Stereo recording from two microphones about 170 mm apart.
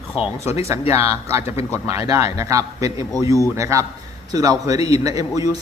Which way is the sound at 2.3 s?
20° right (ahead or behind).